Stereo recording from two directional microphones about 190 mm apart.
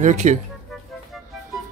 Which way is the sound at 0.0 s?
40° right (ahead or behind).